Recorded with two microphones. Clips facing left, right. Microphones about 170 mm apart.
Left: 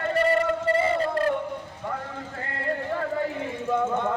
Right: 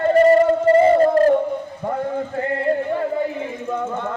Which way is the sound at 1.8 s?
40° right (ahead or behind).